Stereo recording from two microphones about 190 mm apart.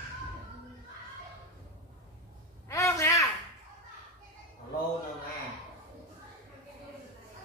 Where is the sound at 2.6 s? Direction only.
15° left (ahead or behind).